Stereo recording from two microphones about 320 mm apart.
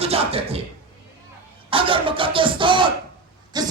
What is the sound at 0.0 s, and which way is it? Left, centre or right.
Speech, centre.